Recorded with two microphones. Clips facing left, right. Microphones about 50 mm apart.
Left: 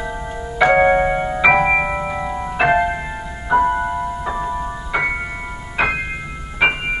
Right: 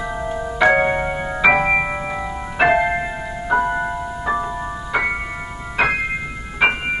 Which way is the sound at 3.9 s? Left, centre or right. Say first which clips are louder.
Even; centre.